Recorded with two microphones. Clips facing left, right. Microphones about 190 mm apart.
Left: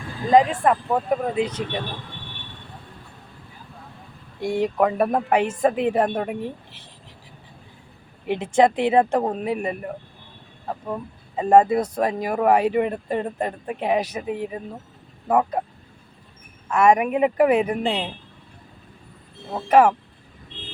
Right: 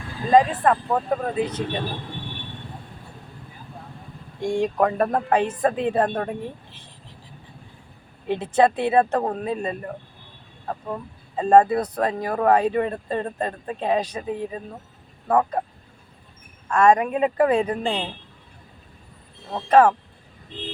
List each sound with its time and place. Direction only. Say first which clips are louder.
0.3 s speech: even; 15° left (ahead or behind)
4.4 s speech: even; 10° left (ahead or behind)
8.3 s speech: left 1 dB; 10° left (ahead or behind)
16.6 s speech: even; 10° left (ahead or behind)
19.5 s speech: even; 10° left (ahead or behind)